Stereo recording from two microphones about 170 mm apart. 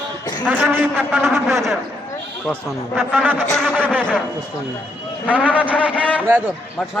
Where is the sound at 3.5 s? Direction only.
5° left (ahead or behind).